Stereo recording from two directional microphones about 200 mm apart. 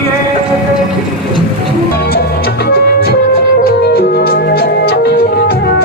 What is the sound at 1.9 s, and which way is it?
Music, 50° left (ahead or behind).